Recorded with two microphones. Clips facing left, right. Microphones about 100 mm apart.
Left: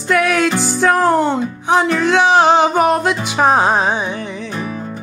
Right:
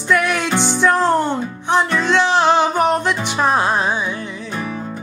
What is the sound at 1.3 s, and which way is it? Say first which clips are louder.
Speech: left 3 dB; 65° left (ahead or behind).